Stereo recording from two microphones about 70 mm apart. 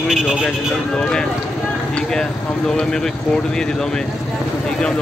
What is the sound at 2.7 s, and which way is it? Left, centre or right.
Speech, centre.